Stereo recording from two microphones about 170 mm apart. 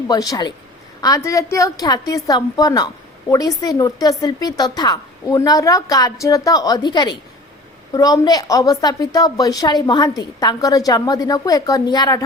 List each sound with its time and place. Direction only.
0.1 s a woman's voice: 20° left (ahead or behind)